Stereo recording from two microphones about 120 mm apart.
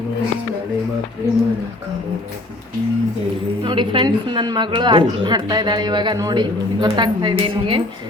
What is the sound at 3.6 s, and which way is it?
A woman's voice, 40° right (ahead or behind).